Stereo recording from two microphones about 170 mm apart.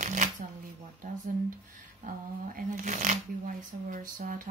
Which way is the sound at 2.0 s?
50° right (ahead or behind).